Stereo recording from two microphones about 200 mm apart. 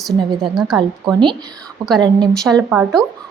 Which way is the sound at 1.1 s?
20° right (ahead or behind).